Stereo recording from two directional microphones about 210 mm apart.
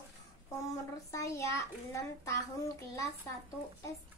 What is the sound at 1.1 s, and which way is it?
Child singing, 15° left (ahead or behind).